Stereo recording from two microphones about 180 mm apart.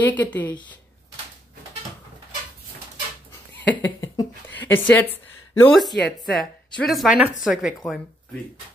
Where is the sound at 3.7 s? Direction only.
10° left (ahead or behind).